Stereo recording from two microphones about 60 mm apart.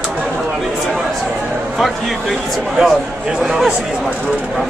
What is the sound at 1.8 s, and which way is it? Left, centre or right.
Speech, centre.